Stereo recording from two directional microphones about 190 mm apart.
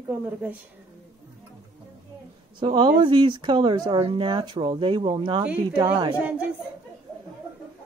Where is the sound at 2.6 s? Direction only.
25° right (ahead or behind).